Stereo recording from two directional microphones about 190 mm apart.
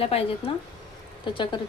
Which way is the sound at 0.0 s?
30° left (ahead or behind).